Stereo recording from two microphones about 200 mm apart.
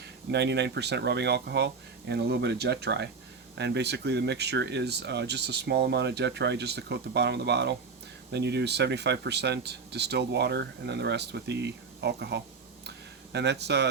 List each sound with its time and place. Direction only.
0.3 s speech: 55° right (ahead or behind)